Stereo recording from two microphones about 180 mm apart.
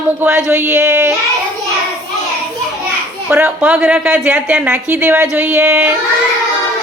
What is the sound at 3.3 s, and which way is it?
Speech, 10° right (ahead or behind).